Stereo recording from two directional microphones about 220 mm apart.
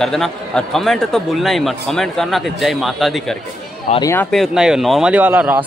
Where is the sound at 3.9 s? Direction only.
15° left (ahead or behind).